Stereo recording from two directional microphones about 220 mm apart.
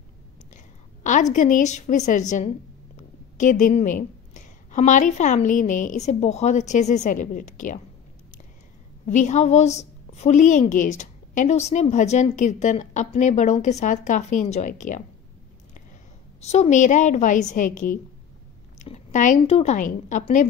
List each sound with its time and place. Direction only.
1.0 s a woman's voice: 35° left (ahead or behind)
9.0 s a woman's voice: 35° left (ahead or behind)
16.3 s a woman's voice: 30° left (ahead or behind)